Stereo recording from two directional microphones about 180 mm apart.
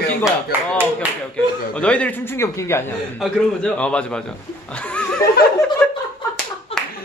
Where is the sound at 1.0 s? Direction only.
10° right (ahead or behind).